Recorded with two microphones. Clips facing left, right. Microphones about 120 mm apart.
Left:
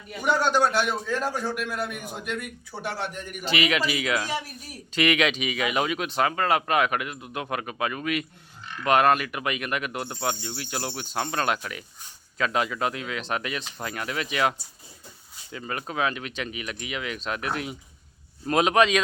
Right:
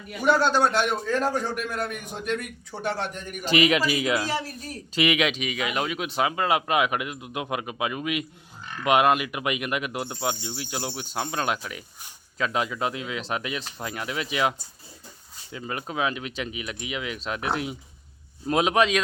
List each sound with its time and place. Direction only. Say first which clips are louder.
0.3 s a man's voice: right 1 dB; 15° left (ahead or behind)
3.4 s a man's voice: right 4 dB; 35° right (ahead or behind)
4.3 s a man's voice: right 2 dB; 15° left (ahead or behind)
4.9 s a man's voice: even; 5° right (ahead or behind)
6.1 s speech: right 2 dB; 10° right (ahead or behind)
15.5 s a man's voice: even; 15° right (ahead or behind)